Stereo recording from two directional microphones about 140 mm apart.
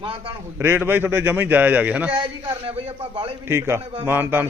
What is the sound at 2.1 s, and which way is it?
Speech, 35° right (ahead or behind).